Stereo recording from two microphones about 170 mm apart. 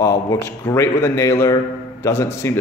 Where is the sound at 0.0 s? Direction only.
15° left (ahead or behind).